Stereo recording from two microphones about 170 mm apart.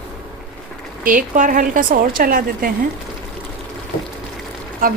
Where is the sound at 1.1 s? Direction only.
50° right (ahead or behind).